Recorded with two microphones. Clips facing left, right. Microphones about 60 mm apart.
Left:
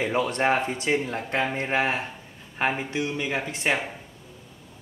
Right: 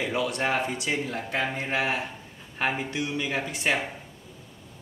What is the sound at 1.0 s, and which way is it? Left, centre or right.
A man's voice, centre.